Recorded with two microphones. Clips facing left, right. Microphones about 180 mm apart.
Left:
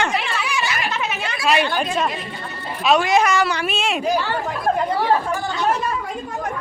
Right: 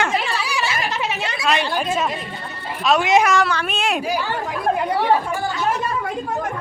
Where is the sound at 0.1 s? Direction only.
35° right (ahead or behind).